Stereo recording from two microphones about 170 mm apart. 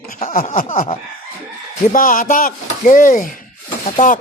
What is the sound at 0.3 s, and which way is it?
Speech, 55° left (ahead or behind).